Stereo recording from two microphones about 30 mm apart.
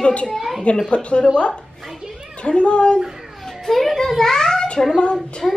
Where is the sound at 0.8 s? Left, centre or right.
Left.